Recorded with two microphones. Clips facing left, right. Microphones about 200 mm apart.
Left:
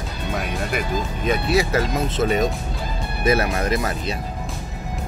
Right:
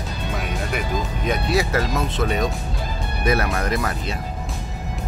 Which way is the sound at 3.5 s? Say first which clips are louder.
Left 1 dB; 25° left (ahead or behind).